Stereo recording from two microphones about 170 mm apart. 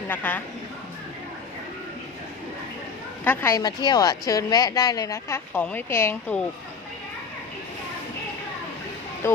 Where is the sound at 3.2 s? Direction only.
10° left (ahead or behind).